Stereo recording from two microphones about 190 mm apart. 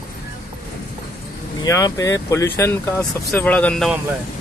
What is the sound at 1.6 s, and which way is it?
Speech, 20° left (ahead or behind).